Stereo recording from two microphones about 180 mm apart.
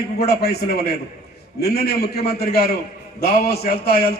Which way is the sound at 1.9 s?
60° left (ahead or behind).